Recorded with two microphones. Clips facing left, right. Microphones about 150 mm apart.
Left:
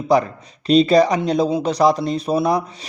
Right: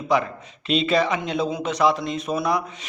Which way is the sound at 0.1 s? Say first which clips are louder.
Left 5 dB; 35° left (ahead or behind).